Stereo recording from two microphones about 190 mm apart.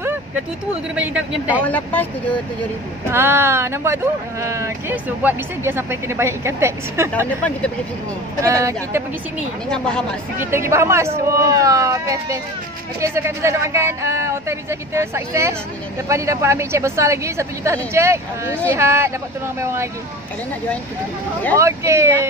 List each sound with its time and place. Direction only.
0.9 s speech: 10° right (ahead or behind)
1.6 s speech: 10° left (ahead or behind)
3.1 s speech: 10° right (ahead or behind)
7.1 s speech: 5° left (ahead or behind)
8.4 s speech: 15° right (ahead or behind)
9.7 s speech: 5° left (ahead or behind)
10.3 s speech: 10° right (ahead or behind)
21.5 s speech: 15° right (ahead or behind)